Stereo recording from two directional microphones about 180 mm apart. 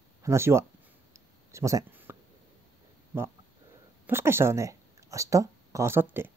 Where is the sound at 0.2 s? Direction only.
15° right (ahead or behind).